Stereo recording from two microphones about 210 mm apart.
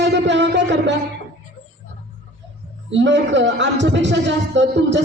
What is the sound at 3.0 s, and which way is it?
A man's voice, 55° right (ahead or behind).